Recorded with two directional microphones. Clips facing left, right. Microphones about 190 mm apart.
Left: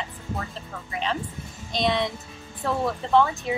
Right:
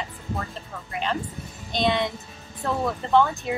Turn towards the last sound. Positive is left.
turn(degrees=0)  # may be behind; listen again after turning